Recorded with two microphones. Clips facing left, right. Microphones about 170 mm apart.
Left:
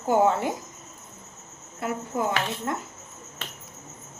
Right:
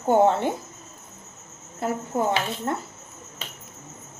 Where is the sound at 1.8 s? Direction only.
30° right (ahead or behind).